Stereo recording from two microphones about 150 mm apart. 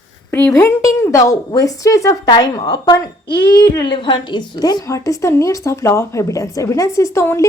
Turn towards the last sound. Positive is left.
turn(degrees=20)  # may be behind; listen again after turning